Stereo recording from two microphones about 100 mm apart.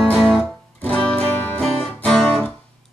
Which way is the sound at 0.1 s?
Centre (ahead or behind).